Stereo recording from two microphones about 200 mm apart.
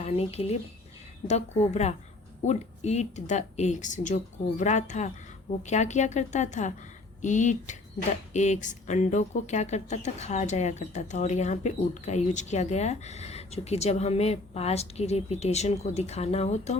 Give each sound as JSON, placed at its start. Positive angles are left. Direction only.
{"t": 0.0, "sound": "speech", "side_deg": 30}